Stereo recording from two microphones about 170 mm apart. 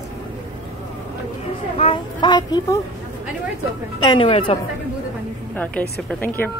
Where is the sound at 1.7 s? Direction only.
35° left (ahead or behind).